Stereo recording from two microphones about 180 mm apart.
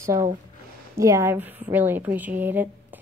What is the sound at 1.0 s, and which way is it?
A woman's voice, 15° right (ahead or behind).